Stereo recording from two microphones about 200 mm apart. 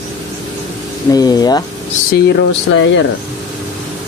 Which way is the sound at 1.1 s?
20° left (ahead or behind).